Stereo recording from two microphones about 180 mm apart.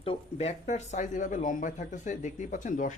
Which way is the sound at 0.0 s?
35° left (ahead or behind).